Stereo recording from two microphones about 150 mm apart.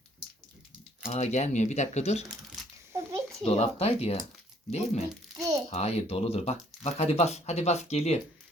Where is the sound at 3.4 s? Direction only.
45° left (ahead or behind).